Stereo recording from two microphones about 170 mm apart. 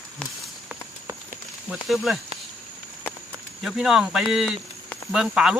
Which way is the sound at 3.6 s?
Centre (ahead or behind).